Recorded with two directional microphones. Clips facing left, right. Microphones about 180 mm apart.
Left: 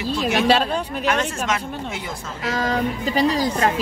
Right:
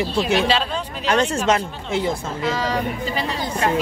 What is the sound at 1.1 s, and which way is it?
Speech, 30° right (ahead or behind).